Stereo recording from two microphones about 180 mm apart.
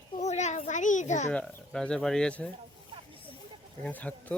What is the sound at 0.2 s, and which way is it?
Children playing, 40° left (ahead or behind).